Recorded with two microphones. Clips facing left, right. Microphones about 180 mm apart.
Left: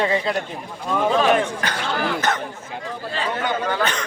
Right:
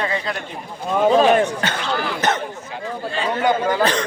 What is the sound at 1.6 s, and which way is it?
Speech, 25° right (ahead or behind).